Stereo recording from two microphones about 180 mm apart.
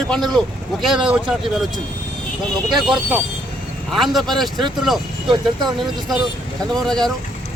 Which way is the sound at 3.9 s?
Centre (ahead or behind).